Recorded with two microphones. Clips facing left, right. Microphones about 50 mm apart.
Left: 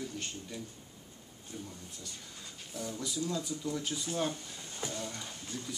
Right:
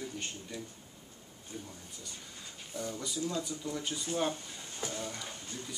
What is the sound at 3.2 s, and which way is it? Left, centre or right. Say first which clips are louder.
Speech: even; centre.